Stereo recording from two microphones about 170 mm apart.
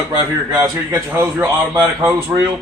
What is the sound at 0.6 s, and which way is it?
A man's voice, 15° right (ahead or behind).